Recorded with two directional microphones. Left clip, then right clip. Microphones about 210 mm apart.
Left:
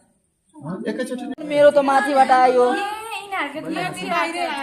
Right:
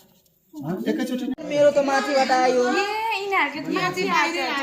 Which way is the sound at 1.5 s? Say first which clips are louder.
Left 4 dB; 50° left (ahead or behind).